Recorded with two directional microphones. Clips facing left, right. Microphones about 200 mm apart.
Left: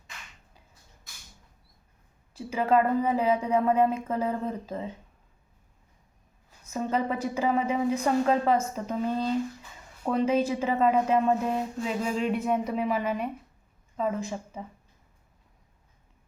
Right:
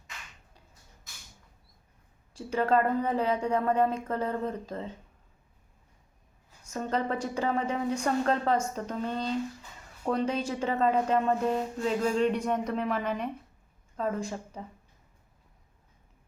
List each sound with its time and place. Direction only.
2.3 s a woman's voice: 5° left (ahead or behind)
6.7 s a woman's voice: 5° left (ahead or behind)